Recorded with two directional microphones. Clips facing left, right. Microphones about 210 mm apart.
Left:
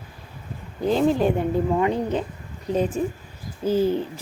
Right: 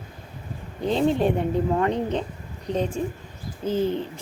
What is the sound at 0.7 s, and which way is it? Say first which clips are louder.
A woman's voice: left 2 dB; 5° left (ahead or behind).